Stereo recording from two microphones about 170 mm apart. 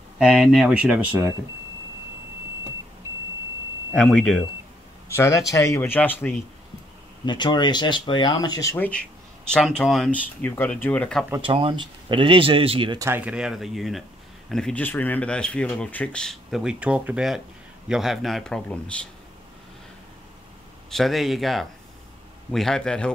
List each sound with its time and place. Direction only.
0.2 s speech: 5° right (ahead or behind)
3.9 s speech: 5° left (ahead or behind)
5.0 s speech: 15° left (ahead or behind)
7.2 s speech: 25° left (ahead or behind)
8.7 s speech: 10° left (ahead or behind)
11.4 s speech: 30° right (ahead or behind)
13.1 s speech: 5° right (ahead or behind)
20.9 s speech: centre (ahead or behind)